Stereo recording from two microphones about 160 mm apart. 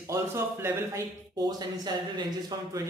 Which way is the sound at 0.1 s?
15° right (ahead or behind).